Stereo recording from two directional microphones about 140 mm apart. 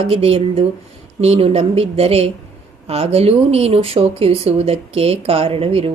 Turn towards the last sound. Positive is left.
turn(degrees=-45)  # may be behind; listen again after turning